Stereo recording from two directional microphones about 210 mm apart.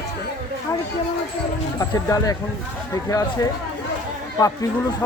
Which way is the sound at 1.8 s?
15° left (ahead or behind).